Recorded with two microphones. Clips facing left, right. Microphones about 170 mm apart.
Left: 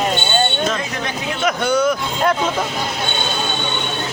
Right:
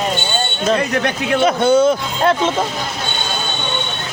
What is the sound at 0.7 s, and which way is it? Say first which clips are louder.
Speech: right 7 dB; 60° right (ahead or behind).